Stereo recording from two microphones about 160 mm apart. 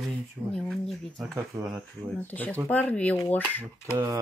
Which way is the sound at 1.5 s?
15° right (ahead or behind).